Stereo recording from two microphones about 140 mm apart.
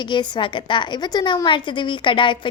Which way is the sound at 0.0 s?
35° left (ahead or behind).